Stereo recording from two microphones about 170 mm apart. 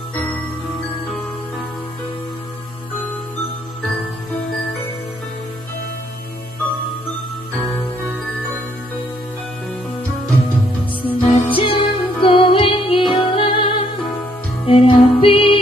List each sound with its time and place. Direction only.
7.8 s music: 10° left (ahead or behind)
11.1 s music: 30° left (ahead or behind)